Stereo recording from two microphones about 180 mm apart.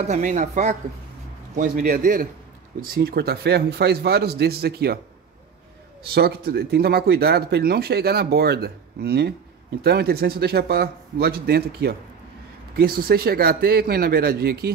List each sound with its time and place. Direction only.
0.0 s speech: 40° right (ahead or behind); by 5.0 s 60° right (ahead or behind)
6.0 s speech: 60° right (ahead or behind)